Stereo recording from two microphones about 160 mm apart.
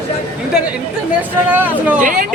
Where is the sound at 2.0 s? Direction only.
55° right (ahead or behind).